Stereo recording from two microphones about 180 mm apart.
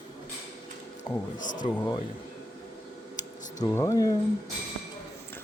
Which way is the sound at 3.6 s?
15° left (ahead or behind).